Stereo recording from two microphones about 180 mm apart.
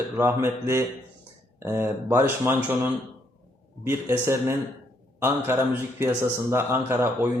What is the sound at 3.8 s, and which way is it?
A man's voice, 15° right (ahead or behind).